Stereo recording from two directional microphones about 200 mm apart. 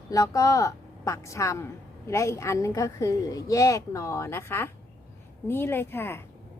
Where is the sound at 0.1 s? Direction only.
15° left (ahead or behind).